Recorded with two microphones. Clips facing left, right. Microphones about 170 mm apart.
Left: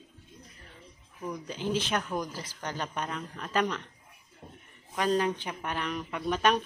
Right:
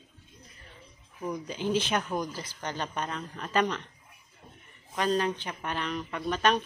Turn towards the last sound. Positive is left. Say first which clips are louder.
# even
turn(degrees=10)  # may be behind; listen again after turning